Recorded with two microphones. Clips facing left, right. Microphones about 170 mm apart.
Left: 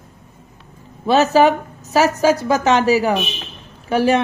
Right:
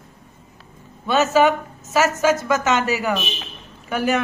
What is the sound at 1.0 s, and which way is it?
Speech, 35° left (ahead or behind).